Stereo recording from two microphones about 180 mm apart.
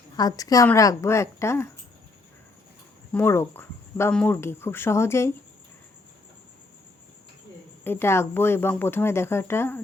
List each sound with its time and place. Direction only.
0.2 s speech: 20° left (ahead or behind)
3.1 s speech: 15° left (ahead or behind)
7.9 s speech: 15° left (ahead or behind)